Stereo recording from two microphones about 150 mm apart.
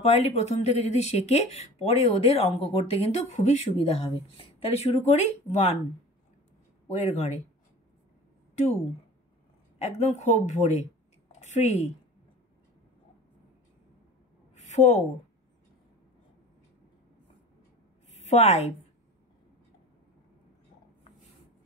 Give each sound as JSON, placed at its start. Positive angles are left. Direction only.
{"t": 0.0, "sound": "speech", "side_deg": 45}
{"t": 6.9, "sound": "speech", "side_deg": 50}
{"t": 9.8, "sound": "a woman's voice", "side_deg": 50}
{"t": 14.5, "sound": "a sound", "side_deg": 50}
{"t": 18.1, "sound": "a woman's voice", "side_deg": 45}